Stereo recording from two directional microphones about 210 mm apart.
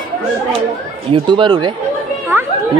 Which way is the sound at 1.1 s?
25° right (ahead or behind).